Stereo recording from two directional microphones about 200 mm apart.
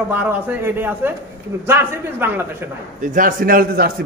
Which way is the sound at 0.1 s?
10° right (ahead or behind).